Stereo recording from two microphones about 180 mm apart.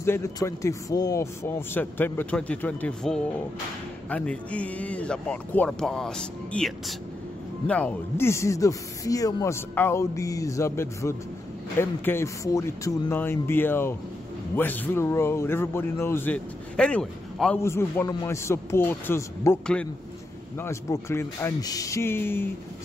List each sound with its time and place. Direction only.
0.0 s speech: 15° left (ahead or behind)